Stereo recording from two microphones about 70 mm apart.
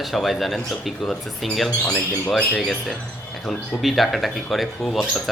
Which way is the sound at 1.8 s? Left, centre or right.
Centre.